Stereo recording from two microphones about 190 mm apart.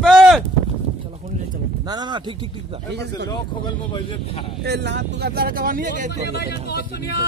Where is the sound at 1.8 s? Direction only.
20° right (ahead or behind).